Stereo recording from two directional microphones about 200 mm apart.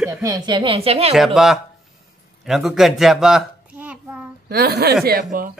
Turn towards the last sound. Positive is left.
turn(degrees=-45)  # may be behind; listen again after turning